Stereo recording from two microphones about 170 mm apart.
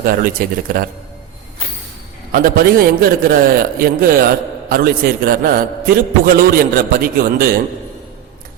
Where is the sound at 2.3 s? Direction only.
60° right (ahead or behind).